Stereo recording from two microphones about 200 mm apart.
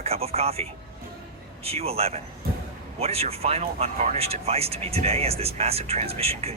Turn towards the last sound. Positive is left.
turn(degrees=-30)  # may be behind; listen again after turning